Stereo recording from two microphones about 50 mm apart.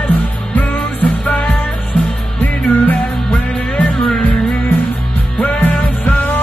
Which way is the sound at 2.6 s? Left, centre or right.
Left.